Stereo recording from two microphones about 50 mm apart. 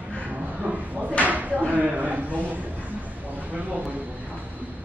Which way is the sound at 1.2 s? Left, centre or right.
Right.